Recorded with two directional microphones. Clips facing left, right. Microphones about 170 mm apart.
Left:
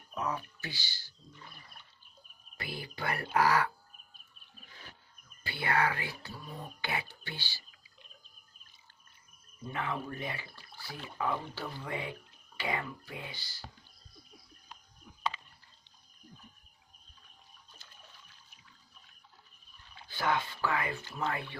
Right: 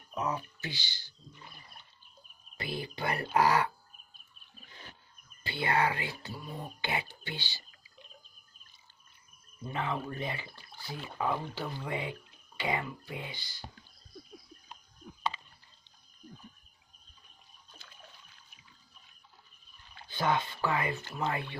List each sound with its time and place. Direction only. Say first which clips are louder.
0.1 s wild animals: right 2 dB; 20° right (ahead or behind)
2.5 s speech: right 4 dB; 20° right (ahead or behind)
4.6 s wild animals: right 2 dB; 25° right (ahead or behind)
5.4 s speech: right 1 dB; 20° right (ahead or behind)
9.7 s speech: right 2 dB; 25° right (ahead or behind)
20.1 s speech: right 2 dB; 20° right (ahead or behind)